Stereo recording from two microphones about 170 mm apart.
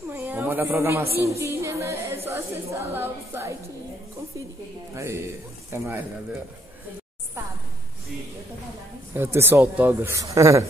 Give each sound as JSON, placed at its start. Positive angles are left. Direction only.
{"t": 0.1, "sound": "a sound", "side_deg": -10}
{"t": 1.2, "sound": "music", "side_deg": -15}
{"t": 2.2, "sound": "a woman's voice", "side_deg": -15}
{"t": 4.9, "sound": "a woman's voice", "side_deg": -15}
{"t": 9.1, "sound": "a woman's voice", "side_deg": -15}